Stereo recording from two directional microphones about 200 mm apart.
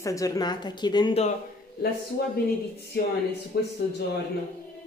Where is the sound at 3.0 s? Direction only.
55° left (ahead or behind).